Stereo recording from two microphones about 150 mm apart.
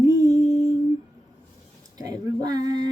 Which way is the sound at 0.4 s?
50° left (ahead or behind).